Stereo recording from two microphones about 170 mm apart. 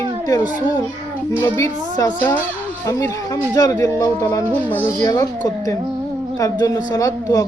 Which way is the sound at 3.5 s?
20° left (ahead or behind).